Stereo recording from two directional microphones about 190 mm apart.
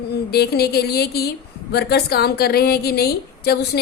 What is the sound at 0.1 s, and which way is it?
A woman's voice, 60° left (ahead or behind).